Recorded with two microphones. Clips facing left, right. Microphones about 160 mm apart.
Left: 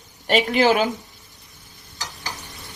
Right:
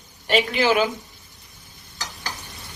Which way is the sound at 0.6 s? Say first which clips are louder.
Left 3 dB; 45° left (ahead or behind).